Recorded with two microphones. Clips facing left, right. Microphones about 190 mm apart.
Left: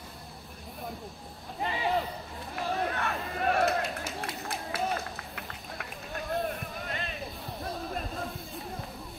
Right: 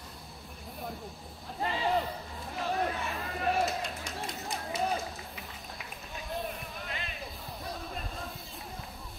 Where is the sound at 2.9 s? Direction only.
65° left (ahead or behind).